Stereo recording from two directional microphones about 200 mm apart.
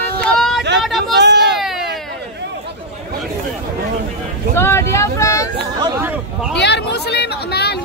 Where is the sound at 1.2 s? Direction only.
60° right (ahead or behind).